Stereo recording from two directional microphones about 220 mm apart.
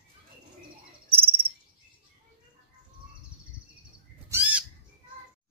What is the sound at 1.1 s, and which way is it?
Cricket, 25° right (ahead or behind).